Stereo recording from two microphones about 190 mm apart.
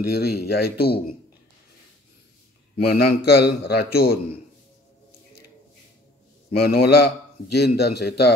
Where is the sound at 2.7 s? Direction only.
55° left (ahead or behind).